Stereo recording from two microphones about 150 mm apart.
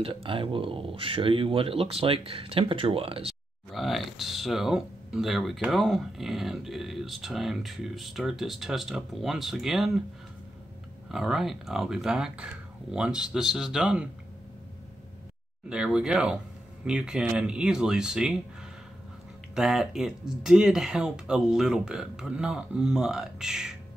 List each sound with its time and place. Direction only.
0.0 s speech: 35° right (ahead or behind)
3.7 s speech: centre (ahead or behind)
11.1 s speech: centre (ahead or behind)
15.7 s speech: 5° right (ahead or behind)
19.5 s speech: 5° right (ahead or behind)